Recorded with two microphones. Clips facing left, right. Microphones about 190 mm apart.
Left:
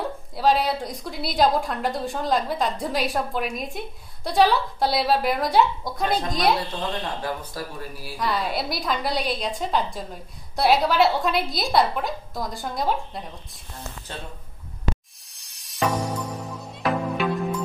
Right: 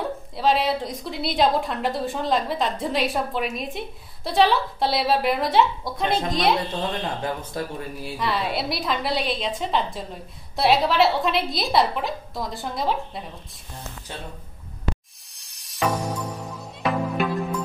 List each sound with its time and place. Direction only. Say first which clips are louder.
0.4 s a woman's voice: even; centre (ahead or behind)
6.0 s speech: right 1 dB; 25° right (ahead or behind)
8.2 s a woman's voice: even; centre (ahead or behind)
15.3 s music: left 1 dB; centre (ahead or behind)